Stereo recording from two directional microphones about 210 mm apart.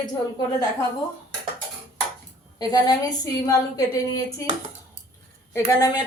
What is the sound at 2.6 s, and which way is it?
A woman's voice, 20° left (ahead or behind).